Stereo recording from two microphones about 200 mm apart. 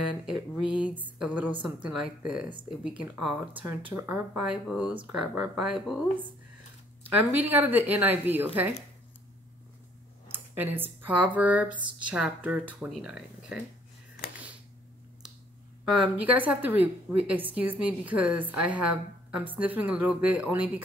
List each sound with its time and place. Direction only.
0.1 s speech: 5° right (ahead or behind)
10.3 s speech: 10° right (ahead or behind)
16.0 s speech: 10° right (ahead or behind)